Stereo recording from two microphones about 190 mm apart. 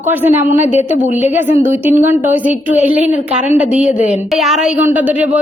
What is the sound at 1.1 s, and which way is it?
Speech, 35° left (ahead or behind).